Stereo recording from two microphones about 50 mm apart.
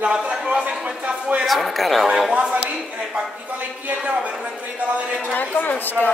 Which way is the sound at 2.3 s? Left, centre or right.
Right.